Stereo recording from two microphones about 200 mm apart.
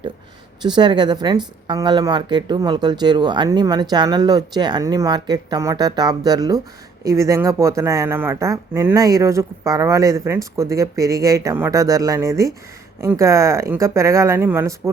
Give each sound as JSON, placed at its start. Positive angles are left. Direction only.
{"t": 0.6, "sound": "a woman's voice", "side_deg": -20}